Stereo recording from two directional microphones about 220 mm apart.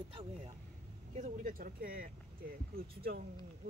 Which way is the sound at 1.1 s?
35° right (ahead or behind).